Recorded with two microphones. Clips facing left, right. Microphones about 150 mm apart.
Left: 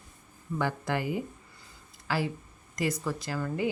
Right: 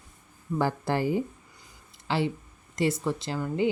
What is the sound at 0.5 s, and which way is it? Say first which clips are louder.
Speech: right 4 dB; 35° right (ahead or behind).